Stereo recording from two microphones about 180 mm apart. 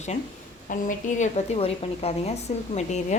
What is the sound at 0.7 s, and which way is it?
A woman's voice, 45° left (ahead or behind).